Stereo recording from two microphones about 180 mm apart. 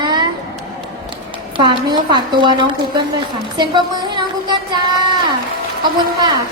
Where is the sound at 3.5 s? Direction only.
25° right (ahead or behind).